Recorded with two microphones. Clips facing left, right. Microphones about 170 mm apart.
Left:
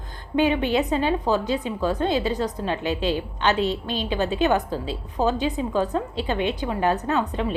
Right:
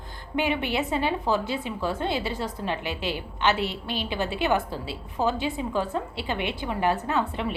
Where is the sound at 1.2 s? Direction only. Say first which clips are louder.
Left 3 dB; 20° left (ahead or behind).